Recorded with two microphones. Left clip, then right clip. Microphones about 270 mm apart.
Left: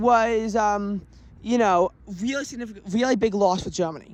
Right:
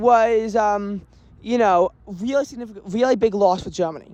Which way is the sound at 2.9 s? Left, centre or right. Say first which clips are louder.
Right 4 dB; centre.